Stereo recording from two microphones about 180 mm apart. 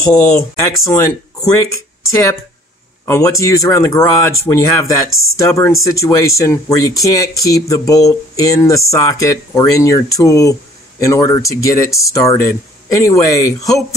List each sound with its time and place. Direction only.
0.1 s speech: 10° left (ahead or behind)
3.1 s speech: 20° left (ahead or behind)